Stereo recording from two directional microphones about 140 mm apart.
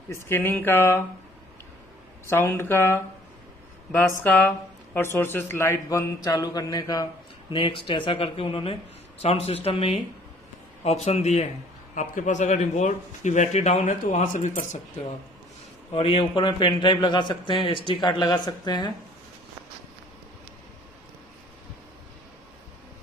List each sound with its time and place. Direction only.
0.1 s speech: 15° left (ahead or behind)
2.2 s a man's voice: 15° left (ahead or behind); by 11.4 s 50° left (ahead or behind)
11.9 s speech: 65° left (ahead or behind)
15.9 s a man's voice: 40° left (ahead or behind)